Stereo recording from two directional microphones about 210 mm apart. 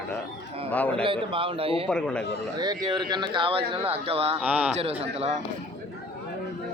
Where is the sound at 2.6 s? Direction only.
20° right (ahead or behind).